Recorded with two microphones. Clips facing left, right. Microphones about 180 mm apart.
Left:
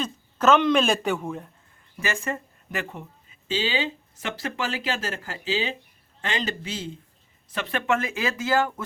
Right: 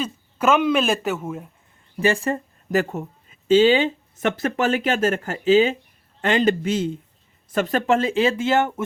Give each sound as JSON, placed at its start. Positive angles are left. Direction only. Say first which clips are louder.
{"t": 0.0, "sound": "speech", "louder": "right 1 dB", "side_deg": -10}
{"t": 2.0, "sound": "speech", "louder": "right 8 dB", "side_deg": -30}